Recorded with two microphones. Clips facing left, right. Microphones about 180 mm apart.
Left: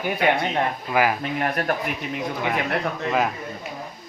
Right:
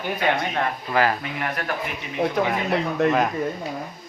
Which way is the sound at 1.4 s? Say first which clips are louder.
Left 4 dB; 40° left (ahead or behind).